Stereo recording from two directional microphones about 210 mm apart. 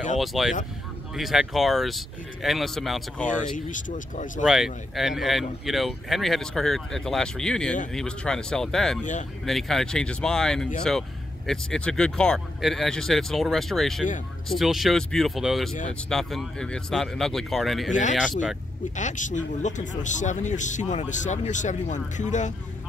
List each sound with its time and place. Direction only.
0.2 s speech: centre (ahead or behind)
3.3 s a man's voice: 35° left (ahead or behind)
4.4 s speech: centre (ahead or behind)
18.9 s a man's voice: 35° left (ahead or behind)